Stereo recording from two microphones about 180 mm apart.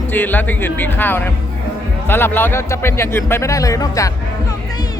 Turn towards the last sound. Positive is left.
turn(degrees=20)  # may be behind; listen again after turning